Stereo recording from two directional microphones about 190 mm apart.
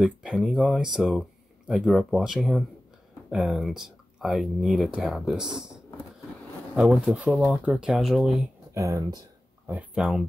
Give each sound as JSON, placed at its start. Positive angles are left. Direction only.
{"t": 0.0, "sound": "speech", "side_deg": 0}
{"t": 8.7, "sound": "speech", "side_deg": -15}
{"t": 9.7, "sound": "speech", "side_deg": -5}